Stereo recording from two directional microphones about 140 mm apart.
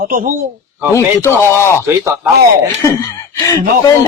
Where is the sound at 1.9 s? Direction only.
15° right (ahead or behind).